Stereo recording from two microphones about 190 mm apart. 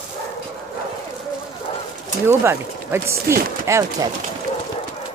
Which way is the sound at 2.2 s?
10° right (ahead or behind).